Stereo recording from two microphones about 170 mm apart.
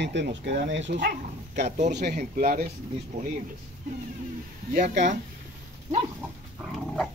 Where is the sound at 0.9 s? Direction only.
60° right (ahead or behind).